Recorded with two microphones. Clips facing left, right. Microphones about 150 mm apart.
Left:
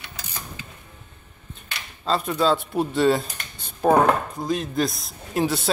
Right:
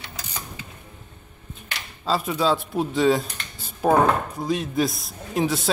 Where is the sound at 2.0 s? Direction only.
5° right (ahead or behind).